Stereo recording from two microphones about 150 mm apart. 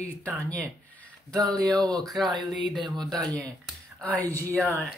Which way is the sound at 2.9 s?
5° left (ahead or behind).